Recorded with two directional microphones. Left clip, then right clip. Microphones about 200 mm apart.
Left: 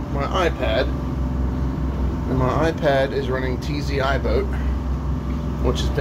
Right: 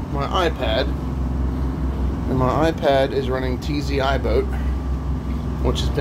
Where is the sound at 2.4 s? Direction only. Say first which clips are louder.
Right 1 dB; 25° right (ahead or behind).